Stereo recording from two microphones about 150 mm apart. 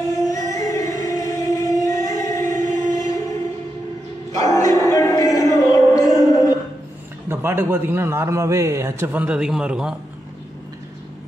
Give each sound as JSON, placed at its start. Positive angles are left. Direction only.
{"t": 0.0, "sound": "music", "side_deg": 20}
{"t": 4.4, "sound": "music", "side_deg": 20}
{"t": 7.2, "sound": "a man's voice", "side_deg": -15}